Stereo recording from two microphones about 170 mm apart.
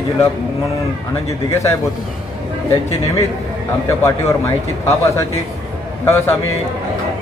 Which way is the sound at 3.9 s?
15° left (ahead or behind).